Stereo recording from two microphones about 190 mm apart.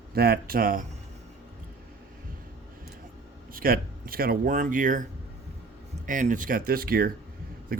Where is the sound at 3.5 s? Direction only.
50° right (ahead or behind).